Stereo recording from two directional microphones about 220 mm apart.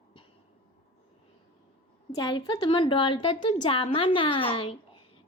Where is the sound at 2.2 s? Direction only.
20° left (ahead or behind).